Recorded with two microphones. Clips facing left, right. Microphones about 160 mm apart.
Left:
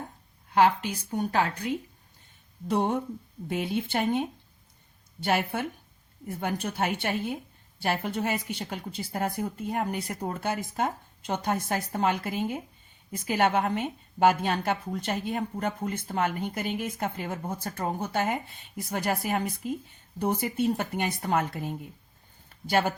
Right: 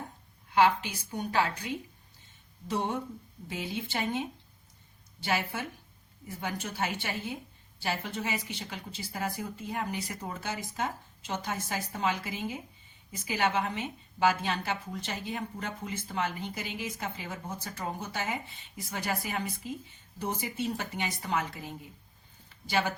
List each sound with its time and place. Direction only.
0.5 s a woman's voice: 45° left (ahead or behind)